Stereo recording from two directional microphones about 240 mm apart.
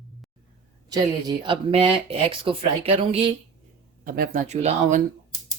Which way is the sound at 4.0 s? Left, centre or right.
Right.